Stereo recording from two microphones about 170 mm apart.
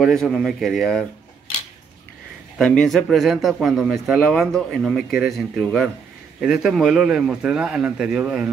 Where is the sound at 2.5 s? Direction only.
5° left (ahead or behind).